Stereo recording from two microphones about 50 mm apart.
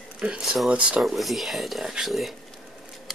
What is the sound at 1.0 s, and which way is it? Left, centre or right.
Speech, centre.